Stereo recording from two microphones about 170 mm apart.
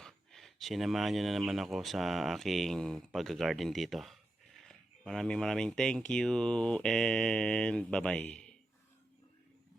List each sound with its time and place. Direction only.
0.0 s speech: centre (ahead or behind)